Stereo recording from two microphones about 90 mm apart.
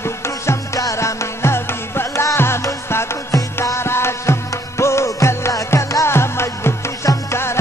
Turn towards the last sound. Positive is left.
turn(degrees=30)  # may be behind; listen again after turning